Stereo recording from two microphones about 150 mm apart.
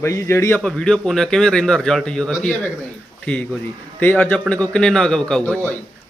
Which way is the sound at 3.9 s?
10° left (ahead or behind).